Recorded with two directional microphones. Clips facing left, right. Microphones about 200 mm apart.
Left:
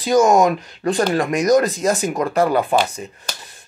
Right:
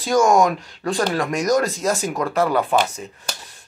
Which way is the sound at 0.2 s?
Centre (ahead or behind).